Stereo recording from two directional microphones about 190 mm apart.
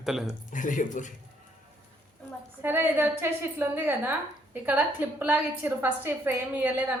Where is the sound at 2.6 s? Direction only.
10° right (ahead or behind).